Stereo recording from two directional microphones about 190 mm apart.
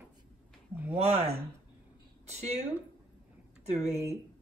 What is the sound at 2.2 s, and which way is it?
Speech, 35° right (ahead or behind).